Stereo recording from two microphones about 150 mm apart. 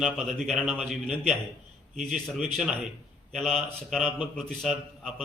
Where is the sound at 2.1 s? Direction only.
5° right (ahead or behind).